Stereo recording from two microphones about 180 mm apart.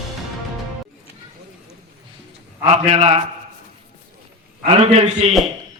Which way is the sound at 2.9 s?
35° right (ahead or behind).